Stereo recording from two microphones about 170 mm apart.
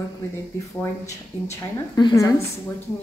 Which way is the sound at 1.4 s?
20° left (ahead or behind).